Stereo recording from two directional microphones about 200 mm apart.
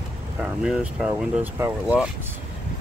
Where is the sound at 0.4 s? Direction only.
5° right (ahead or behind).